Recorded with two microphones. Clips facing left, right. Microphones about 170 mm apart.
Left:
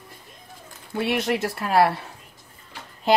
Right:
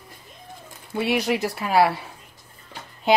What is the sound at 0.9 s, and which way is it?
Speech, centre (ahead or behind).